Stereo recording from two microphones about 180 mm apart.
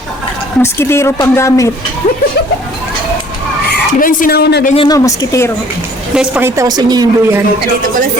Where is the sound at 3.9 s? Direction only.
50° left (ahead or behind); by 4.6 s 65° left (ahead or behind).